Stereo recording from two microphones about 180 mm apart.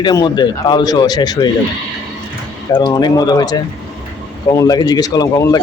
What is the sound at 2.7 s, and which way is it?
Speech, 25° left (ahead or behind).